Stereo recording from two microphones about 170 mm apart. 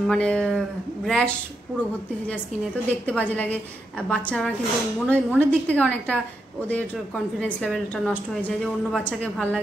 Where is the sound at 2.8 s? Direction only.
10° left (ahead or behind).